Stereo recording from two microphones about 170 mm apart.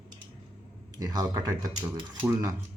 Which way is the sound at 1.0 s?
20° right (ahead or behind).